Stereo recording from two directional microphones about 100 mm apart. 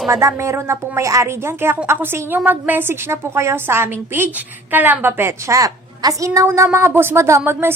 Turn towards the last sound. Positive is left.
turn(degrees=-25)  # may be behind; listen again after turning